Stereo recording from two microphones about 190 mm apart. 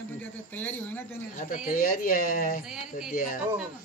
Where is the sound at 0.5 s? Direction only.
10° left (ahead or behind).